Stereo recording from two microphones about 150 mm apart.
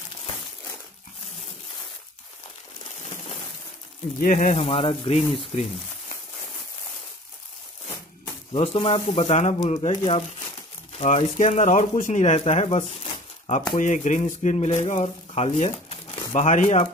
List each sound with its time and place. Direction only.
4.2 s speech: 60° left (ahead or behind)
4.6 s speech: 40° left (ahead or behind)
8.5 s speech: 40° left (ahead or behind)
13.6 s speech: 60° left (ahead or behind)